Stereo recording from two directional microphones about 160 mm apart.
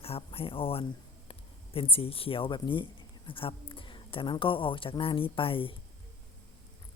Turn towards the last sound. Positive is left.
turn(degrees=35)  # may be behind; listen again after turning